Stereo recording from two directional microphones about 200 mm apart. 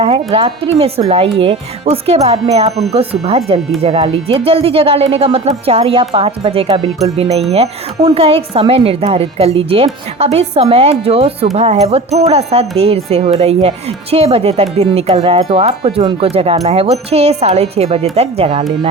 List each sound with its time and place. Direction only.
0.0 s speech: 30° right (ahead or behind)